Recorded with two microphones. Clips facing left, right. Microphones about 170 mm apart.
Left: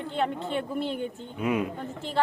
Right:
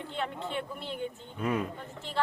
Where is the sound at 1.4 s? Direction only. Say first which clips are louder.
Left 4 dB; 10° left (ahead or behind).